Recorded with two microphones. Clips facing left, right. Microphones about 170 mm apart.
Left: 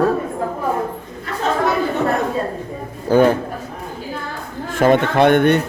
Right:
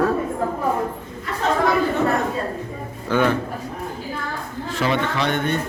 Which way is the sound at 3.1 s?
40° left (ahead or behind).